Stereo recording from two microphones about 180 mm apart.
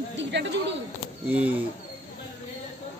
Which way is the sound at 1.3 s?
10° right (ahead or behind).